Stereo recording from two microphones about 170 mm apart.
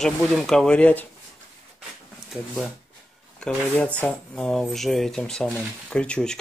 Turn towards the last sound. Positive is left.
turn(degrees=5)  # may be behind; listen again after turning